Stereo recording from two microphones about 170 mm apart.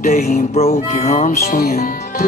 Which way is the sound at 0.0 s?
55° left (ahead or behind).